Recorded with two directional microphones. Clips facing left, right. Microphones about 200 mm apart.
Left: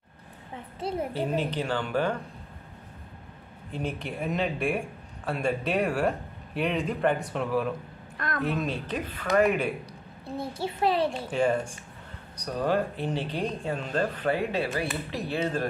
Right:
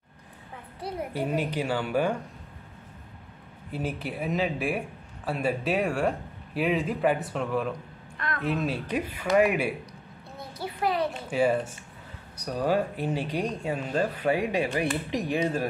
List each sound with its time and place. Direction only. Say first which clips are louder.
1.1 s speech: even; 10° right (ahead or behind)
3.7 s speech: right 1 dB; 5° right (ahead or behind)
8.8 s speech: right 2 dB; 10° right (ahead or behind)
10.2 s a woman's voice: left 5 dB; 30° left (ahead or behind)
11.2 s speech: right 1 dB; 10° right (ahead or behind)